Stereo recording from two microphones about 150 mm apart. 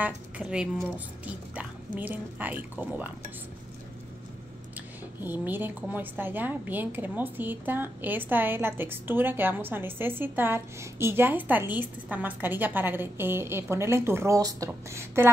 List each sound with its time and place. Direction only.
0.0 s speech: 5° right (ahead or behind)
5.2 s a woman's voice: 10° right (ahead or behind)